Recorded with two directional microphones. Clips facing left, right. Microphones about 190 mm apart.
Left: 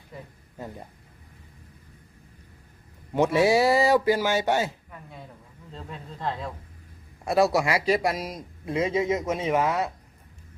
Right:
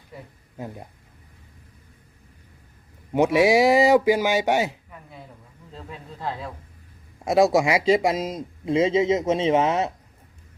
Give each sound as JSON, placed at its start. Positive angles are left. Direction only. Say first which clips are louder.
{"t": 0.1, "sound": "speech", "louder": "right 2 dB", "side_deg": -5}
{"t": 3.1, "sound": "speech", "louder": "right 3 dB", "side_deg": -10}
{"t": 5.7, "sound": "speech", "louder": "right 1 dB", "side_deg": -5}
{"t": 7.3, "sound": "speech", "louder": "right 4 dB", "side_deg": -20}